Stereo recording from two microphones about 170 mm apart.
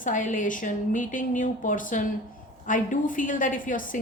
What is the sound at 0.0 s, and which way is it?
Speech, 50° left (ahead or behind).